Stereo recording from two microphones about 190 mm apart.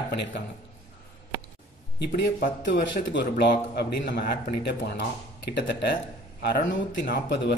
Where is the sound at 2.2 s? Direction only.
60° left (ahead or behind).